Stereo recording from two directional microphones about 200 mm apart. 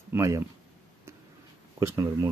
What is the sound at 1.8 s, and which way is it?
Speech, 15° right (ahead or behind).